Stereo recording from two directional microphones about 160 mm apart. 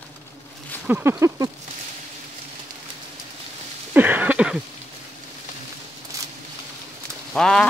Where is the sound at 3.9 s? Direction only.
10° right (ahead or behind).